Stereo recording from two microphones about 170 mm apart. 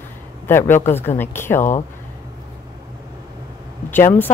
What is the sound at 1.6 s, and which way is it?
Speech, 45° left (ahead or behind).